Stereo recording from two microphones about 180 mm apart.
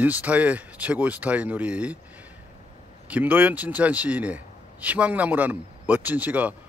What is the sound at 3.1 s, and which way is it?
A man's voice, 10° right (ahead or behind).